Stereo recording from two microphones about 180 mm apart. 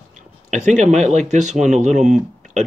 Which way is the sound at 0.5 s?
40° right (ahead or behind).